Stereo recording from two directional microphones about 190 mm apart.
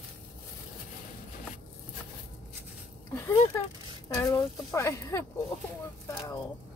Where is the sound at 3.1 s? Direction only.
15° left (ahead or behind).